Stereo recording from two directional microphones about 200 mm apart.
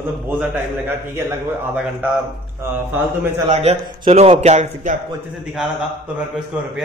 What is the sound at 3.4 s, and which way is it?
A man's voice, 30° right (ahead or behind).